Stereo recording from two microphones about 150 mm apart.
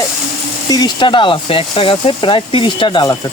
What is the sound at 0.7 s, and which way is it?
Speech, 30° left (ahead or behind).